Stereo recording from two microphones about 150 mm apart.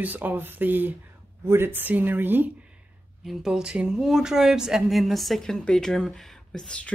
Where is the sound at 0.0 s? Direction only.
10° right (ahead or behind).